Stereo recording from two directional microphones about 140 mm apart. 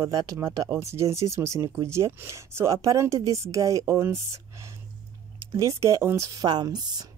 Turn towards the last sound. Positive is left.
turn(degrees=-30)  # may be behind; listen again after turning